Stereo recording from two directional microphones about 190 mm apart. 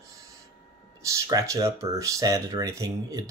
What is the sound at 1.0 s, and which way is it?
Speech, 15° right (ahead or behind).